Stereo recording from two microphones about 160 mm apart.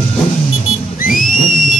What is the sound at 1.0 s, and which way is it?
Whistle, 60° left (ahead or behind).